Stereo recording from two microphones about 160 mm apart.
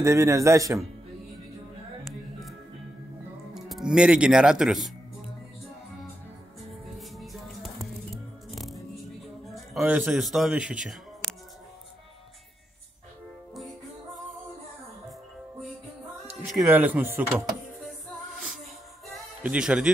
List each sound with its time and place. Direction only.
0.0 s speech: 20° right (ahead or behind)
3.5 s speech: centre (ahead or behind)
6.9 s music: centre (ahead or behind)
9.5 s a man's voice: 5° right (ahead or behind)
16.3 s speech: 10° right (ahead or behind)
19.1 s music: 5° right (ahead or behind)